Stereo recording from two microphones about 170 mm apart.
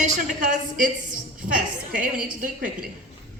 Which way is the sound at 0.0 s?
45° right (ahead or behind).